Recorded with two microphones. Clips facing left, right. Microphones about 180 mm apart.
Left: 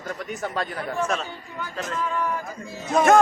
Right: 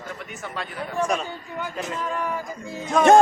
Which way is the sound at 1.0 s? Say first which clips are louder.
Right 3 dB; 10° right (ahead or behind).